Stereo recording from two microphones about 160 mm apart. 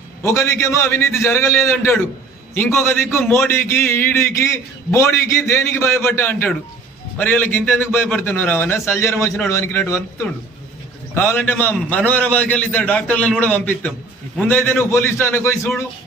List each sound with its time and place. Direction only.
0.2 s a man's voice: 15° left (ahead or behind)